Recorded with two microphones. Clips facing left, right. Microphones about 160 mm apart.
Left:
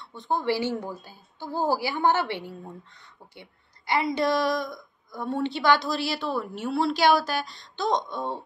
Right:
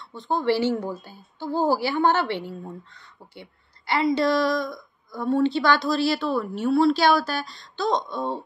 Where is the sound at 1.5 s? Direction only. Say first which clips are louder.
Right 4 dB; 20° right (ahead or behind).